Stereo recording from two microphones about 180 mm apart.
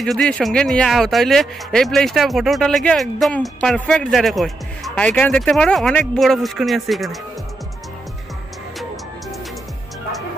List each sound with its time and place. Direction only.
0.0 s speech: 5° left (ahead or behind)